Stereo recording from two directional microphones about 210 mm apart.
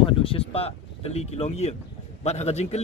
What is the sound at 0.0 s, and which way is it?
A man's voice, 25° left (ahead or behind).